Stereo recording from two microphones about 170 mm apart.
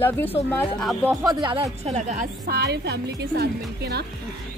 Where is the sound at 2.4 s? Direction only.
70° right (ahead or behind).